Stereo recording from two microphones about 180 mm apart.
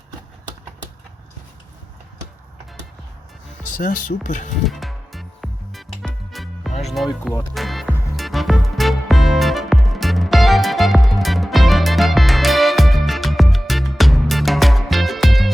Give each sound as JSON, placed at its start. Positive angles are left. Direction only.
{"t": 3.8, "sound": "speech", "side_deg": 50}
{"t": 4.6, "sound": "music", "side_deg": 0}
{"t": 6.8, "sound": "speech", "side_deg": 0}
{"t": 7.5, "sound": "music", "side_deg": 0}